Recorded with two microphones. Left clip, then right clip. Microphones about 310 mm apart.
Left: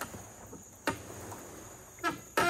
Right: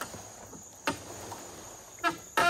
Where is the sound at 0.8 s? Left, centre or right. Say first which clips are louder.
Right 2 dB; right.